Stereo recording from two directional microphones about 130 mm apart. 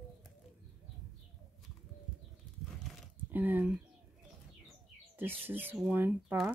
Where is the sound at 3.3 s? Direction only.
15° right (ahead or behind).